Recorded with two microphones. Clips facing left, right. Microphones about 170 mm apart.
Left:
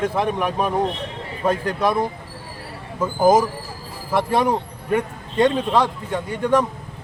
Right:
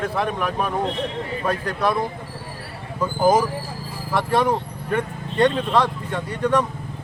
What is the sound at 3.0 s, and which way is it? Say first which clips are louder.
A man's voice: left 2 dB; 25° left (ahead or behind).